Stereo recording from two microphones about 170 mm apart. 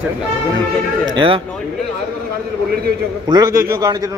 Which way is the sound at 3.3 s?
20° right (ahead or behind).